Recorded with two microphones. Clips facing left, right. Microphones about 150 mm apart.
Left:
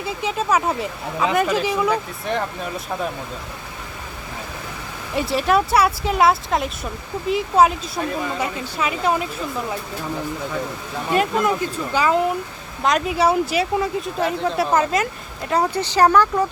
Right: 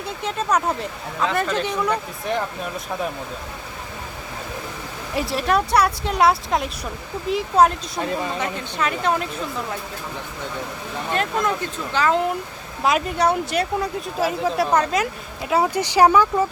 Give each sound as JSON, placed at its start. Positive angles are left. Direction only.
{"t": 0.0, "sound": "speech", "side_deg": 5}
{"t": 5.1, "sound": "a woman's voice", "side_deg": 0}
{"t": 10.9, "sound": "a woman's voice", "side_deg": 5}